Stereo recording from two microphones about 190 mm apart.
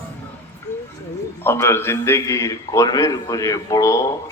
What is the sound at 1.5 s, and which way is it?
A man's voice, 15° left (ahead or behind).